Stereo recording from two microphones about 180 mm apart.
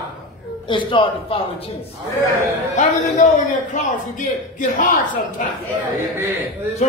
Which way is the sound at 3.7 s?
45° left (ahead or behind).